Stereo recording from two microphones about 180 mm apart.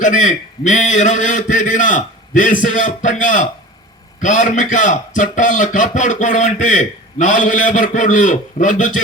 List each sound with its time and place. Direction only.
0.0 s a man's voice: 45° left (ahead or behind)